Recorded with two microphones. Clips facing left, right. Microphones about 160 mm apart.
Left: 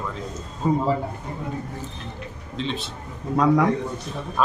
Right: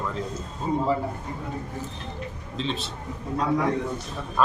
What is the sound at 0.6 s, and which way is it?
Speech, 75° left (ahead or behind).